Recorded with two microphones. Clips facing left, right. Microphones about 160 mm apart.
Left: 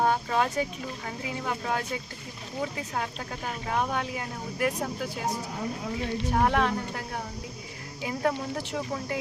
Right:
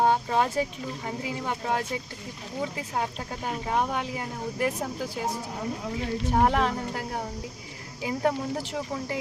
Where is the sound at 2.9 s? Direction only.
25° right (ahead or behind).